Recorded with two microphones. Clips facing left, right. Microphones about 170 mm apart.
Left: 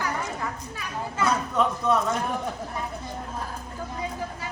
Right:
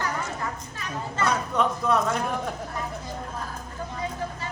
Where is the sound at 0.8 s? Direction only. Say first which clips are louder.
Even; 10° left (ahead or behind).